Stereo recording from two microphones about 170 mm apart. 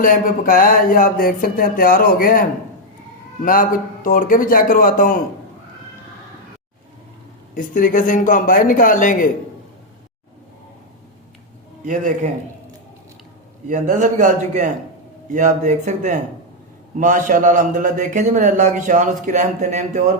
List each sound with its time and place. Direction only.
0.0 s speech: 55° left (ahead or behind)
7.5 s speech: 55° left (ahead or behind)
11.9 s a man's voice: 50° right (ahead or behind)
13.7 s a man's voice: 45° right (ahead or behind)